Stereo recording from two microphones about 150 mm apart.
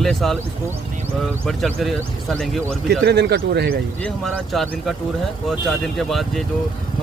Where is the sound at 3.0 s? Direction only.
90° right.